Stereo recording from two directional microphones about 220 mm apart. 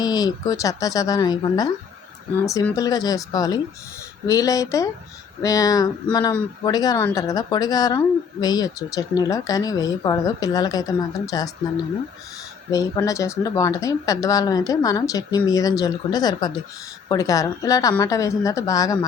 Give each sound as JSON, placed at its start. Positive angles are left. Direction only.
{"t": 0.0, "sound": "speech", "side_deg": 15}
{"t": 12.7, "sound": "speech", "side_deg": 15}